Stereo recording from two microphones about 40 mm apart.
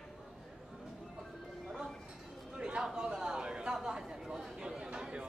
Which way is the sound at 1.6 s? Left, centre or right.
Centre.